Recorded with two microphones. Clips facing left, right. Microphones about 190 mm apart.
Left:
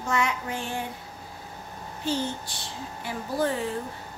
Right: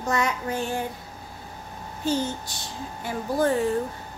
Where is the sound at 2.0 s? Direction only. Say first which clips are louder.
Right 3 dB; 45° right (ahead or behind).